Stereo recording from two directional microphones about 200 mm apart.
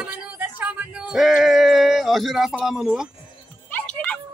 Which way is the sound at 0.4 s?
10° right (ahead or behind).